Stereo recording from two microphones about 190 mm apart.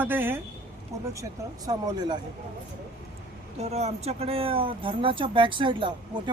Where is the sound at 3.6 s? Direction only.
35° right (ahead or behind).